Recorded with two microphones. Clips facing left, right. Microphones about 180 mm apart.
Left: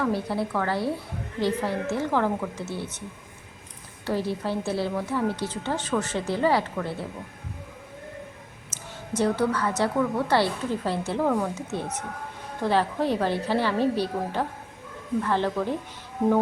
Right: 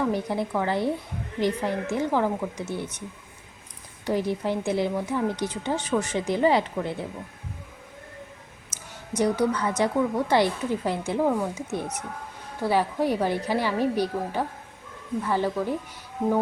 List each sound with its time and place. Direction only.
0.0 s a woman's voice: 15° right (ahead or behind)
4.0 s a woman's voice: 15° right (ahead or behind)
8.7 s a woman's voice: 15° right (ahead or behind)